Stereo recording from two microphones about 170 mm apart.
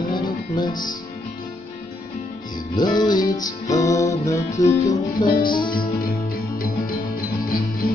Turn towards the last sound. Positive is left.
turn(degrees=60)  # may be behind; listen again after turning